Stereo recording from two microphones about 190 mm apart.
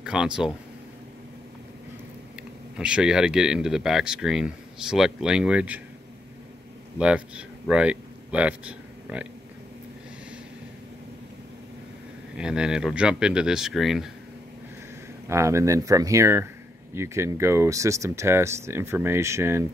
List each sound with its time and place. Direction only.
0.0 s speech: 5° right (ahead or behind)
2.8 s speech: 5° right (ahead or behind)
7.0 s speech: 5° right (ahead or behind)
12.4 s speech: 5° right (ahead or behind)
15.2 s speech: 15° right (ahead or behind)